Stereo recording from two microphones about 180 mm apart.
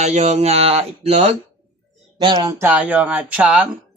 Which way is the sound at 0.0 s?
40° right (ahead or behind).